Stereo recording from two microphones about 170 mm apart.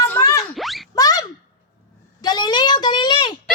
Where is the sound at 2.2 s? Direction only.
25° left (ahead or behind).